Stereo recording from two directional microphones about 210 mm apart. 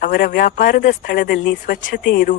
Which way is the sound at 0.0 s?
45° left (ahead or behind).